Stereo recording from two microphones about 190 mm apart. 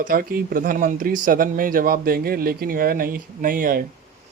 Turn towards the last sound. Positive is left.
turn(degrees=-50)  # may be behind; listen again after turning